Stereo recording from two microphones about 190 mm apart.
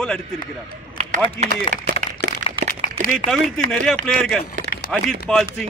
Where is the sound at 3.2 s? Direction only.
5° left (ahead or behind).